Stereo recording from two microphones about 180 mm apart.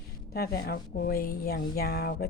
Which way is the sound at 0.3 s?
60° left (ahead or behind).